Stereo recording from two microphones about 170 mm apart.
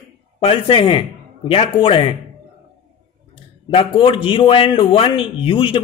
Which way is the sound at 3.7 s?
30° left (ahead or behind).